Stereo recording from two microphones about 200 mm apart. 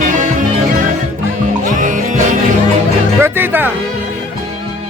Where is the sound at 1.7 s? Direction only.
40° right (ahead or behind).